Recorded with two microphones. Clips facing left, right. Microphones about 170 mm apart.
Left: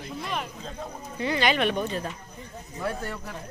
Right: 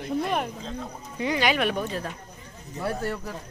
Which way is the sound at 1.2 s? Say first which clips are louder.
Even; 10° right (ahead or behind).